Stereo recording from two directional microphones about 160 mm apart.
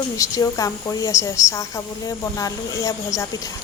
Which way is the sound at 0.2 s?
20° left (ahead or behind).